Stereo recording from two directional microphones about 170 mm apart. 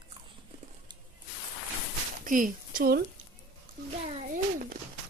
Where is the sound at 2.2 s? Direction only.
50° right (ahead or behind).